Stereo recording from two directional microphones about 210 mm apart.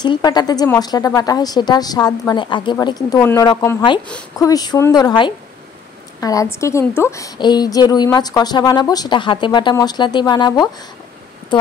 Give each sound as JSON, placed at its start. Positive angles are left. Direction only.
{"t": 0.0, "sound": "a woman's voice", "side_deg": 20}